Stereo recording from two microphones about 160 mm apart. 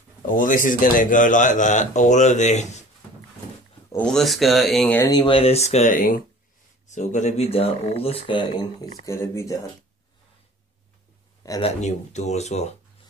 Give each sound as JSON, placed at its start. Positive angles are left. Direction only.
{"t": 0.3, "sound": "a man's voice", "side_deg": 55}
{"t": 3.9, "sound": "speech", "side_deg": 5}
{"t": 4.9, "sound": "speech", "side_deg": 25}
{"t": 6.9, "sound": "speech", "side_deg": 50}
{"t": 9.0, "sound": "speech", "side_deg": 15}
{"t": 11.6, "sound": "a man's voice", "side_deg": 45}